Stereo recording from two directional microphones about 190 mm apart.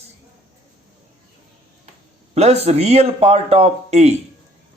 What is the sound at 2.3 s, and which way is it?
A man's voice, 35° right (ahead or behind).